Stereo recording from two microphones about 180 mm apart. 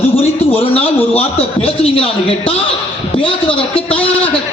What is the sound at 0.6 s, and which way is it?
A man's voice, 30° left (ahead or behind).